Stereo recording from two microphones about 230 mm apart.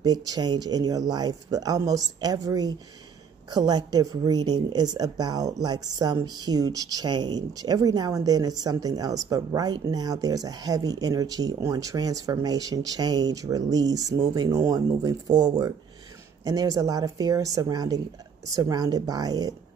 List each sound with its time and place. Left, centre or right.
0.0 s speech: centre